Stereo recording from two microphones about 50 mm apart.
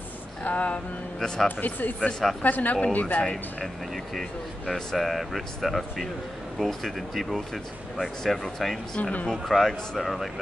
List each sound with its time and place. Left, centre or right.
0.4 s a sound: left
1.2 s speech: centre
1.6 s speech: left
2.0 s speech: centre
2.4 s speech: left
3.6 s speech: centre